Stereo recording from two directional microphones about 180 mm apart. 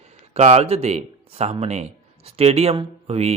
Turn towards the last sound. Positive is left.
turn(degrees=-35)  # may be behind; listen again after turning